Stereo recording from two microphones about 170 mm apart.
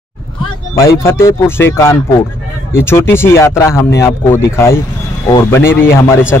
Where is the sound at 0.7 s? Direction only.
15° left (ahead or behind).